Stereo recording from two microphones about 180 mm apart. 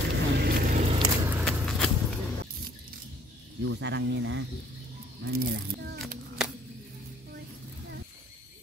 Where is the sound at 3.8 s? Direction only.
75° right (ahead or behind).